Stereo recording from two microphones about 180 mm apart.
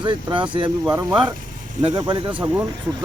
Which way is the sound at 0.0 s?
25° right (ahead or behind).